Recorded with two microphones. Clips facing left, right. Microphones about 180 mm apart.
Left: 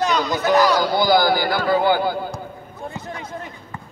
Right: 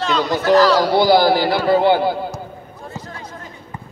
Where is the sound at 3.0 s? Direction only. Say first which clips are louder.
Left 2 dB; 25° left (ahead or behind).